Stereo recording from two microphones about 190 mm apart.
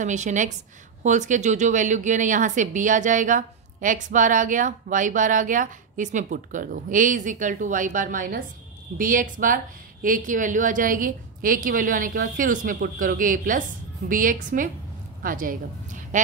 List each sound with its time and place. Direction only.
0.0 s a woman's voice: 40° right (ahead or behind)